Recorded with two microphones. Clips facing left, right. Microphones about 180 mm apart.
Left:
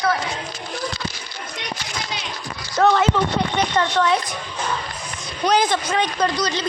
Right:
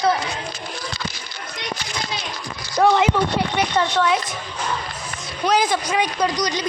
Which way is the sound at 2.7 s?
15° right (ahead or behind).